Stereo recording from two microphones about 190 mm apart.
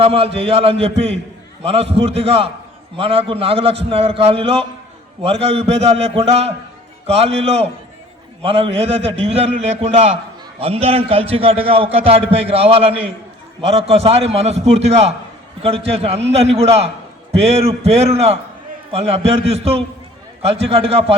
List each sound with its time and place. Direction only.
0.0 s a man's voice: 30° right (ahead or behind)